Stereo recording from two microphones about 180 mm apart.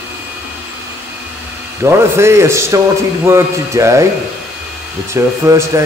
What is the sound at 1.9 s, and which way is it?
A man's voice, 15° right (ahead or behind).